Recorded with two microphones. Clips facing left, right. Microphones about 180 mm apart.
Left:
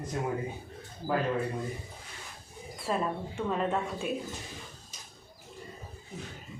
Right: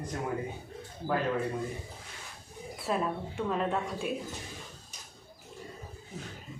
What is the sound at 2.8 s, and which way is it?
A woman's voice, centre (ahead or behind).